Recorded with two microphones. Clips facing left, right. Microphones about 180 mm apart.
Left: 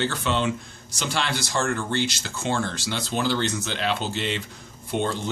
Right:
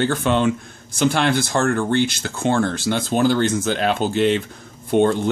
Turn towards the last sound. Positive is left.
turn(degrees=-55)  # may be behind; listen again after turning